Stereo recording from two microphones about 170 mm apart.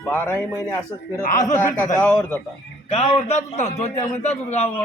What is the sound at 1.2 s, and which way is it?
Speech, 50° left (ahead or behind).